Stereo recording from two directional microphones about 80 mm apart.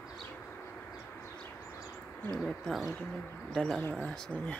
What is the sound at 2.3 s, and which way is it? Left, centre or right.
Speech, centre.